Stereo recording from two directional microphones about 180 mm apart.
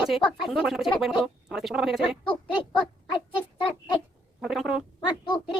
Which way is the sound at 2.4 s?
25° left (ahead or behind).